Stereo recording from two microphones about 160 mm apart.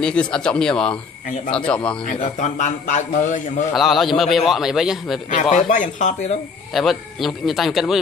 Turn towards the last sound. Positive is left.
turn(degrees=0)  # may be behind; listen again after turning